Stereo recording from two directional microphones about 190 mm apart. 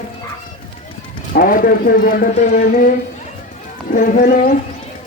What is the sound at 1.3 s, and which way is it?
Speech, 45° left (ahead or behind).